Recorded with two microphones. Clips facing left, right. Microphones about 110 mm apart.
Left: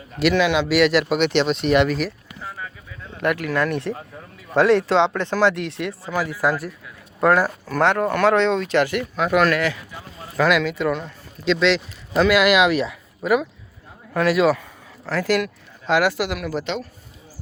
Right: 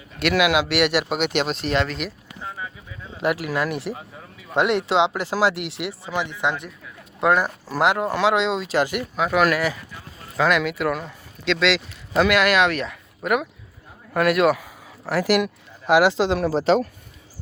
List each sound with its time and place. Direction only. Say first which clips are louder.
0.3 s speech: even; 10° right (ahead or behind)
1.3 s speech: left 4 dB; 45° right (ahead or behind)
1.7 s speech: left 6 dB; 15° left (ahead or behind)
2.4 s a sound: right 1 dB; 15° right (ahead or behind)
3.2 s speech: left 2 dB; 20° right (ahead or behind)
6.1 s speech: left 3 dB; 5° left (ahead or behind)
7.2 s speech: left 2 dB; 15° right (ahead or behind)
7.8 s speech: left 2 dB; 5° right (ahead or behind)
8.6 s speech: left 2 dB; 15° right (ahead or behind)
15.0 s speech: right 1 dB; 10° right (ahead or behind); by 16.8 s 35° right (ahead or behind)